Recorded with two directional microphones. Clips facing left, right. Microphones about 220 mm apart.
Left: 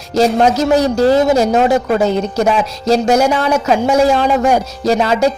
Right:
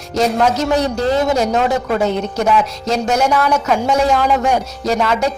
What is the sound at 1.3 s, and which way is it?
Speech, 5° left (ahead or behind).